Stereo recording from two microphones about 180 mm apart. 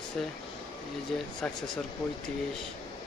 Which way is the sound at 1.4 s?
5° left (ahead or behind).